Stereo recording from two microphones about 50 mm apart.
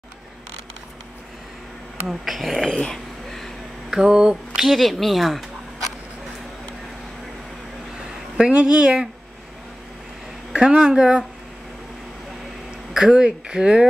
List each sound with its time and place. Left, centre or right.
2.0 s speech: centre
2.6 s a sound: centre
3.9 s mantra: centre
4.6 s speech: centre
8.4 s speech: centre
10.5 s speech: centre
12.9 s speech: centre